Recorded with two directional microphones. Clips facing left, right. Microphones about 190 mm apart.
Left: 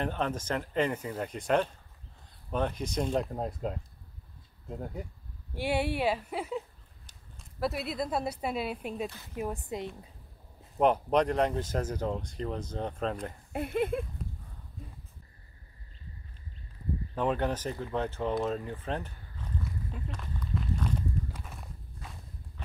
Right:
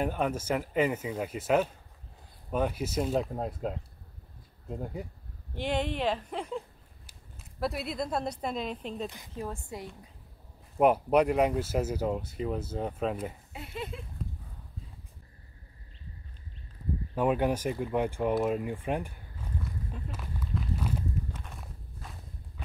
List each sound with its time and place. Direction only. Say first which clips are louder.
0.0 s speech: right 2 dB; 10° right (ahead or behind)
5.5 s speech: left 1 dB; 10° left (ahead or behind)
7.6 s speech: even; centre (ahead or behind); by 9.8 s 20° left (ahead or behind)
10.8 s speech: right 2 dB; 10° right (ahead or behind)
13.5 s speech: left 9 dB; 55° left (ahead or behind)
17.1 s speech: right 3 dB; 10° right (ahead or behind)
20.1 s run: even; 5° right (ahead or behind)
21.4 s walk: even; centre (ahead or behind)